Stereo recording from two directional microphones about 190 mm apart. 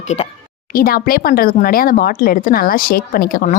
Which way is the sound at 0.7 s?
50° left (ahead or behind).